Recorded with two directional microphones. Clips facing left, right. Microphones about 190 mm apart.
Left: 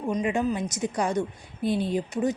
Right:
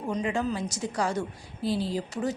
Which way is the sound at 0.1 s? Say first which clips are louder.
Left 3 dB; 15° left (ahead or behind).